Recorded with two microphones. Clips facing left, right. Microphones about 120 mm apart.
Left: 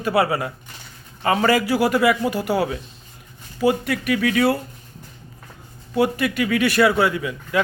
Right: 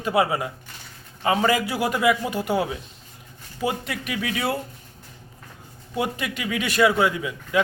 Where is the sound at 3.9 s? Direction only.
25° right (ahead or behind).